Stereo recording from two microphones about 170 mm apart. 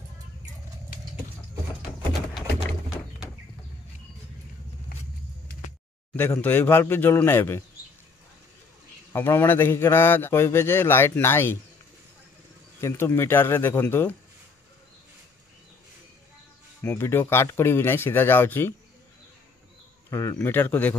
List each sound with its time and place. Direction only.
1.9 s a sound: 30° left (ahead or behind)
6.1 s a man's voice: 10° left (ahead or behind)
9.1 s a man's voice: 15° left (ahead or behind)
12.8 s a man's voice: 15° left (ahead or behind)
16.8 s a man's voice: 15° left (ahead or behind)
20.1 s a man's voice: 15° left (ahead or behind)